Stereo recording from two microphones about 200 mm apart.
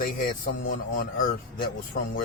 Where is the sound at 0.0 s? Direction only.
45° left (ahead or behind).